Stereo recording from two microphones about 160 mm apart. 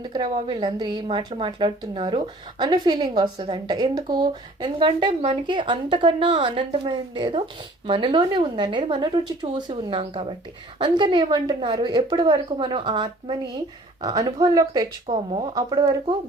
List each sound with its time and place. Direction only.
0.0 s a woman's voice: 30° right (ahead or behind)
15.0 s a woman's voice: 35° right (ahead or behind)
15.5 s speech: 25° right (ahead or behind)